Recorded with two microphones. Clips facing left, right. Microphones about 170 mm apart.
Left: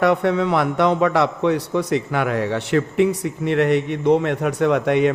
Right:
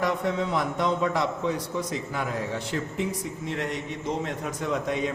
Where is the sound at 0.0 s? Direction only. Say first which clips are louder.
Left 9 dB; 70° left (ahead or behind).